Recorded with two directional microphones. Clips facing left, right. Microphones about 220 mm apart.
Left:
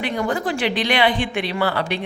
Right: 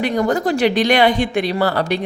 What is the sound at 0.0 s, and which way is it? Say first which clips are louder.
Speech: right 5 dB; 40° right (ahead or behind).